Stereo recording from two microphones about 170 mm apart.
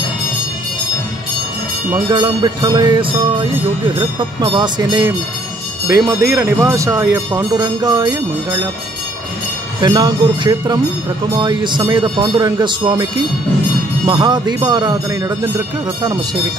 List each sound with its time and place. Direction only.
2.0 s speech: 25° right (ahead or behind)
9.8 s speech: 25° right (ahead or behind)